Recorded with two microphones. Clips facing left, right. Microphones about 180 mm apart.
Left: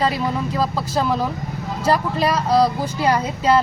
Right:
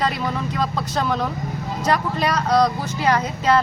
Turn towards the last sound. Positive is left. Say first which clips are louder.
# left 1 dB
turn(degrees=10)  # may be behind; listen again after turning